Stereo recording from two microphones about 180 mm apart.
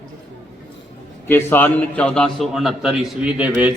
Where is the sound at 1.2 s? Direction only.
15° left (ahead or behind); by 3.7 s 10° right (ahead or behind).